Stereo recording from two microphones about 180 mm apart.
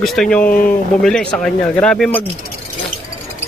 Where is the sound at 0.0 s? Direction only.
Centre (ahead or behind).